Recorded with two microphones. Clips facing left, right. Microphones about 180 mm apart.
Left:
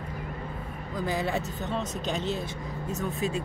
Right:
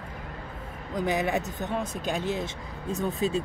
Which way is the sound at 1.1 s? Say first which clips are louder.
Right 2 dB; 20° right (ahead or behind).